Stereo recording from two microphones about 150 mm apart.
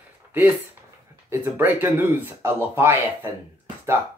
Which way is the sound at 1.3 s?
15° right (ahead or behind).